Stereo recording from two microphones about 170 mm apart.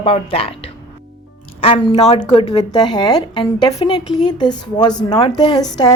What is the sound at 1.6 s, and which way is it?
Speech, 35° left (ahead or behind).